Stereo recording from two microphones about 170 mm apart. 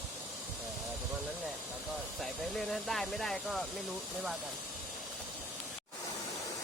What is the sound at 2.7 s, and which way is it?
Speech, centre (ahead or behind).